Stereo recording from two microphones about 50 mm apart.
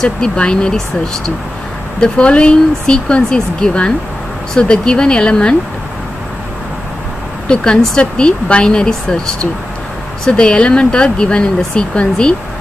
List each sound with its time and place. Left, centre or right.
0.0 s speech: centre
7.4 s speech: centre